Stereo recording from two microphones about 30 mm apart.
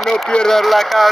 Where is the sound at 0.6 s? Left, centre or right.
Centre.